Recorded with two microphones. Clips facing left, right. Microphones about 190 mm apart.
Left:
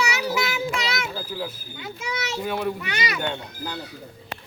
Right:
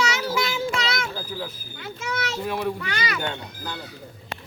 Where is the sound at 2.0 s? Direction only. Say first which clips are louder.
Right 1 dB; 5° left (ahead or behind).